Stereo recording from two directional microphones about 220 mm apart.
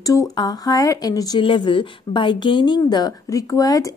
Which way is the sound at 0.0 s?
15° left (ahead or behind).